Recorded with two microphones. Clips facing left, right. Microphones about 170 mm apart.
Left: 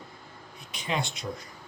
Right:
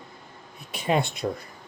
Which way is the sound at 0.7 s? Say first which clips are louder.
Right 7 dB; 55° right (ahead or behind).